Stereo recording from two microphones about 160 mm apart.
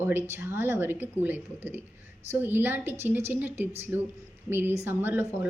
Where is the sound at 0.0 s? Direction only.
15° right (ahead or behind).